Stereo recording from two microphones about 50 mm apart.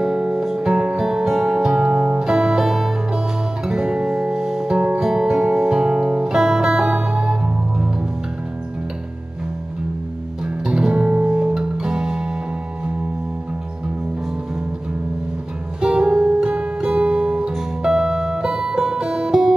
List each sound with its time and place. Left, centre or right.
0.0 s music: centre
4.7 s music: centre
10.4 s music: centre
15.8 s music: centre
16.9 s guitar: right
17.5 s music: centre